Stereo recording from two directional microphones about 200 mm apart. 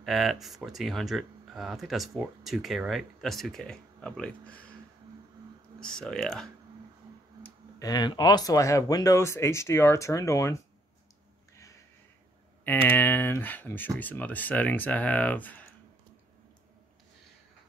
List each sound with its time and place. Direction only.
0.0 s speech: centre (ahead or behind)
5.8 s speech: 5° left (ahead or behind)
7.4 s speech: 20° left (ahead or behind)
12.6 s speech: 10° left (ahead or behind)